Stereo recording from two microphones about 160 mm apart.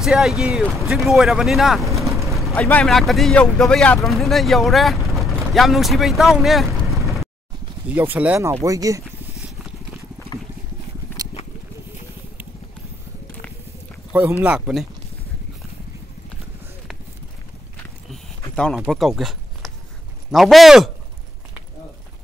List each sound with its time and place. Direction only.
0.0 s speech: centre (ahead or behind)
2.0 s vehicle: 20° right (ahead or behind)
2.5 s speech: 5° left (ahead or behind)
7.8 s speech: 10° right (ahead or behind)
8.6 s speech: 20° right (ahead or behind)
11.2 s a sound: 20° right (ahead or behind)
14.4 s speech: 5° right (ahead or behind)
18.9 s speech: centre (ahead or behind)